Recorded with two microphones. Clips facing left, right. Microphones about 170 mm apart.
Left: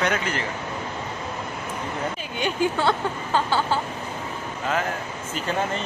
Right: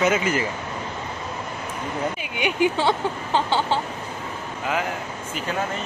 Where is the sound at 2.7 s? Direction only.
20° right (ahead or behind).